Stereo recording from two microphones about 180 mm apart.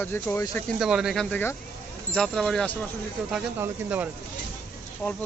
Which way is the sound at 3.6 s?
10° right (ahead or behind).